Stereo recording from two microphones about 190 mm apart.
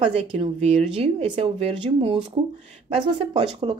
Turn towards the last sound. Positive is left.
turn(degrees=-25)  # may be behind; listen again after turning